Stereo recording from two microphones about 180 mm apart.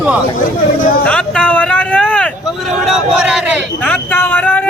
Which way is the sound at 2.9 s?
5° right (ahead or behind).